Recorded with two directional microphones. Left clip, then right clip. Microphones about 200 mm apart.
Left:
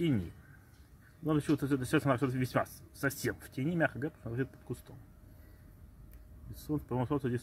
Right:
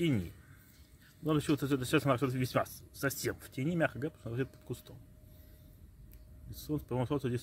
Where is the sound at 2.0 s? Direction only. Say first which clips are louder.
Even; 5° right (ahead or behind).